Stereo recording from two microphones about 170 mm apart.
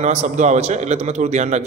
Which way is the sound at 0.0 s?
40° right (ahead or behind).